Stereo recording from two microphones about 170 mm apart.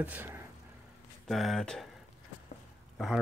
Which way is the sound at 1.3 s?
Centre (ahead or behind).